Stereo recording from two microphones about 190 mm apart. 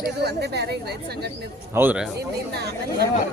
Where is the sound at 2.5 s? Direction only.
60° right (ahead or behind).